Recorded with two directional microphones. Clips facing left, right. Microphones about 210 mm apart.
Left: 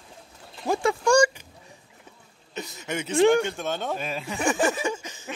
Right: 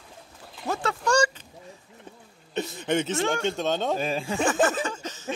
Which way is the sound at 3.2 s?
15° left (ahead or behind).